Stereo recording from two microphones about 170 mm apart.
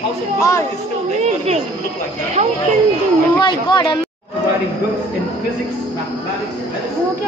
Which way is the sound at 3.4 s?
25° left (ahead or behind).